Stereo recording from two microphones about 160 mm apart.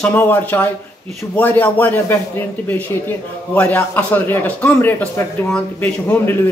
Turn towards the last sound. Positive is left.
turn(degrees=10)  # may be behind; listen again after turning